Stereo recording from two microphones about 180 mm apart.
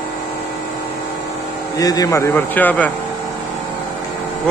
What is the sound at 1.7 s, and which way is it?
A man's voice, 20° left (ahead or behind).